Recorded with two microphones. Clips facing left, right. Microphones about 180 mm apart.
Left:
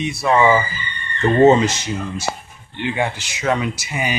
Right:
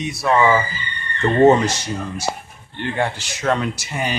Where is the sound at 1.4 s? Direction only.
20° left (ahead or behind).